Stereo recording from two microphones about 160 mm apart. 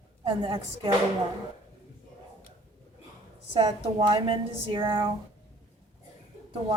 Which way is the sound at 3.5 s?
30° right (ahead or behind).